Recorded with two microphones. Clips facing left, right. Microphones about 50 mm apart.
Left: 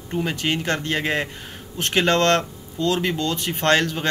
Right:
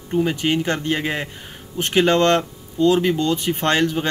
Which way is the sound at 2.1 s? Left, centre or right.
Right.